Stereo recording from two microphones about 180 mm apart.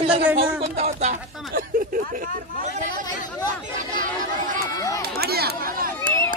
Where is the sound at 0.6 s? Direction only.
35° right (ahead or behind).